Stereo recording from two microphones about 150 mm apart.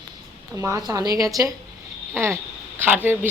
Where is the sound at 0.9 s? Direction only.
25° right (ahead or behind).